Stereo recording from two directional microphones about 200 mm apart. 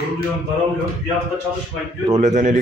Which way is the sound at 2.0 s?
35° right (ahead or behind).